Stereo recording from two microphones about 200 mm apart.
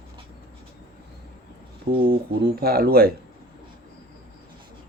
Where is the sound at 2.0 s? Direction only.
50° right (ahead or behind).